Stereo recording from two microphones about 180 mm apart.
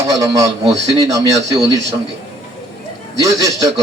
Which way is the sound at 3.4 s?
20° right (ahead or behind).